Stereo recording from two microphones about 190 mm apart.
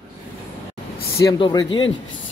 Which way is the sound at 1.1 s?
20° left (ahead or behind).